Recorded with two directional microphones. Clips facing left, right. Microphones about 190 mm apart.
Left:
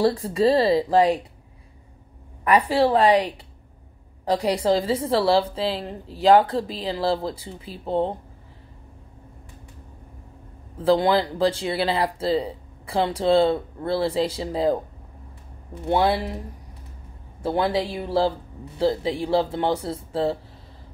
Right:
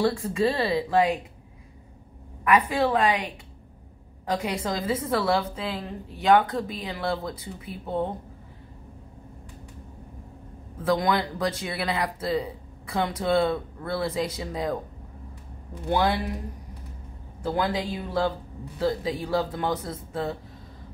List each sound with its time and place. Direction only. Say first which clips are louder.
0.0 s a woman's voice: left 4 dB; 35° left (ahead or behind)
2.4 s a woman's voice: left 3 dB; 35° left (ahead or behind)
10.8 s speech: left 5 dB; 30° left (ahead or behind)
15.9 s speech: left 3 dB; 25° left (ahead or behind)
17.4 s a woman's voice: left 4 dB; 30° left (ahead or behind)